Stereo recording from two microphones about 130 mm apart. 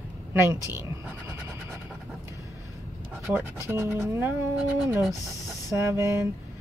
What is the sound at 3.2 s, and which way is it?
Speech, 20° right (ahead or behind).